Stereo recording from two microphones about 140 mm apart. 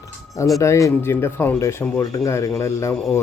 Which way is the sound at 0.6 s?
20° left (ahead or behind).